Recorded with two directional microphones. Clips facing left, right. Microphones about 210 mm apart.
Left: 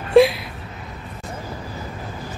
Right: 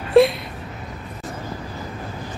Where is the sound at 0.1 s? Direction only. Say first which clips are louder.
Left 1 dB; centre (ahead or behind).